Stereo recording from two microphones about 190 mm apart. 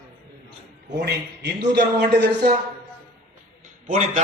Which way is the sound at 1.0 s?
65° right (ahead or behind).